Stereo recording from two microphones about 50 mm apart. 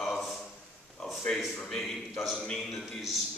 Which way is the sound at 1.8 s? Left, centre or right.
Centre.